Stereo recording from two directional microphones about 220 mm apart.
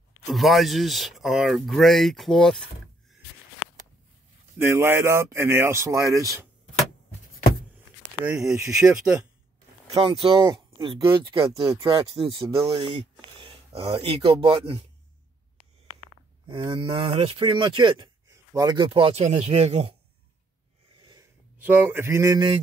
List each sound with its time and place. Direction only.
0.3 s speech: centre (ahead or behind)
4.6 s speech: 10° right (ahead or behind)
6.7 s a sound: 35° left (ahead or behind)
8.3 s speech: centre (ahead or behind)
9.9 s speech: 25° right (ahead or behind)
16.4 s speech: 20° right (ahead or behind)
21.5 s speech: 10° right (ahead or behind)